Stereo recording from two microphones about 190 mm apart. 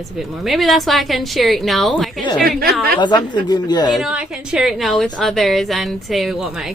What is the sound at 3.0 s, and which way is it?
Speech, 25° left (ahead or behind).